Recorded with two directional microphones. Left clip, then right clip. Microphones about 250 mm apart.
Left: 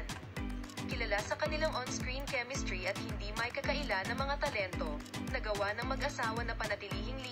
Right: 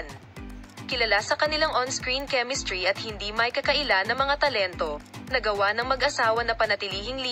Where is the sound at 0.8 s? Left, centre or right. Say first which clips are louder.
Right 13 dB; right.